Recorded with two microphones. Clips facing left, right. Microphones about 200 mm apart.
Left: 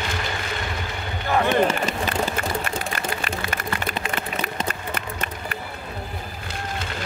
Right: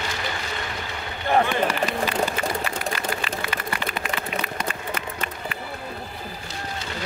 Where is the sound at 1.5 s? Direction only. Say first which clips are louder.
Left 3 dB; 45° left (ahead or behind).